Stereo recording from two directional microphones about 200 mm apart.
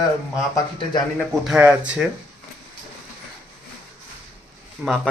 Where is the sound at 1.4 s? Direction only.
5° right (ahead or behind).